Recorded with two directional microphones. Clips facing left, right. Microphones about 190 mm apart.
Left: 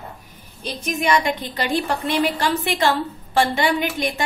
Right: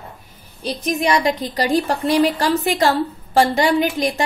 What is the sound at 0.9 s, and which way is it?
A woman's voice, 35° right (ahead or behind).